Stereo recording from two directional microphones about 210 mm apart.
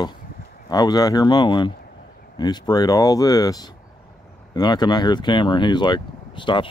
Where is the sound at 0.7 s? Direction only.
20° left (ahead or behind).